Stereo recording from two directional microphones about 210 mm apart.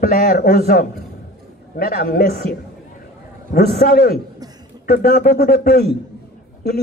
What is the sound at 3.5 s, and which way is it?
A man's voice, 50° left (ahead or behind).